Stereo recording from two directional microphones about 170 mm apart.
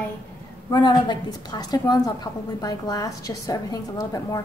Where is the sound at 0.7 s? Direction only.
25° left (ahead or behind).